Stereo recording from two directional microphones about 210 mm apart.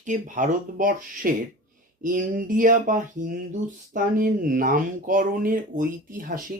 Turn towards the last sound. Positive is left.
turn(degrees=-40)  # may be behind; listen again after turning